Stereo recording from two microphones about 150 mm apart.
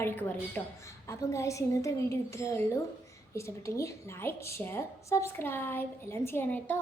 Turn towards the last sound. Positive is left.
turn(degrees=10)  # may be behind; listen again after turning